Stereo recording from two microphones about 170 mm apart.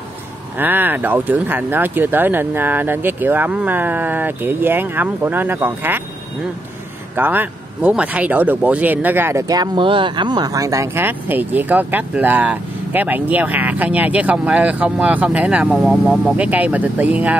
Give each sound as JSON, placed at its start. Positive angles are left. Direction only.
{"t": 0.6, "sound": "speech", "side_deg": -10}
{"t": 7.2, "sound": "speech", "side_deg": -10}